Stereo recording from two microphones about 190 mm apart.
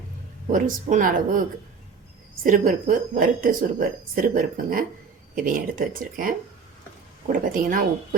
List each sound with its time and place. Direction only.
0.5 s speech: 45° right (ahead or behind)
2.4 s speech: 45° right (ahead or behind)
7.3 s speech: 45° right (ahead or behind)